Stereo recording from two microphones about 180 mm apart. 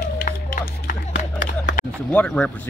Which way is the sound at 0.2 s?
50° left (ahead or behind).